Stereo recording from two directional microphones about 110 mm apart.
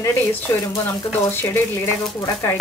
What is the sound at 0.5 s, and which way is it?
Stir, 25° left (ahead or behind).